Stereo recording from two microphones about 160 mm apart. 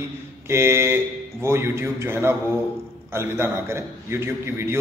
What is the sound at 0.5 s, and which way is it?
A man's voice, 15° right (ahead or behind).